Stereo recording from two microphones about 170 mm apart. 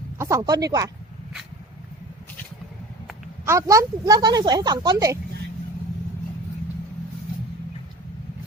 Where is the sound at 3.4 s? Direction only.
15° right (ahead or behind).